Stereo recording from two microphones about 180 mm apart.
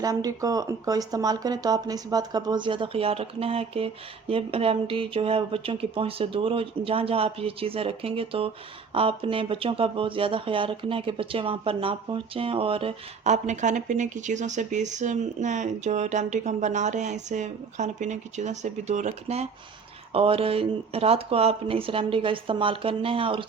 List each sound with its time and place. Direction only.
0.0 s speech: 20° right (ahead or behind)